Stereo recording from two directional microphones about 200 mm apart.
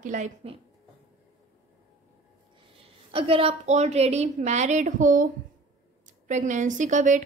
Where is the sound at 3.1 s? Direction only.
30° right (ahead or behind).